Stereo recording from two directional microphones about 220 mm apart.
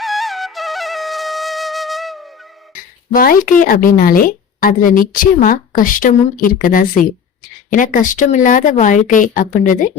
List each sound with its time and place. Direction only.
0.0 s flute: centre (ahead or behind)
3.2 s a woman's voice: 40° left (ahead or behind)